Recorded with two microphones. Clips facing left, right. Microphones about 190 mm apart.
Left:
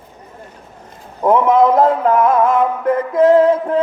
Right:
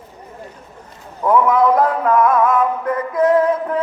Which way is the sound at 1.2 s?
25° left (ahead or behind).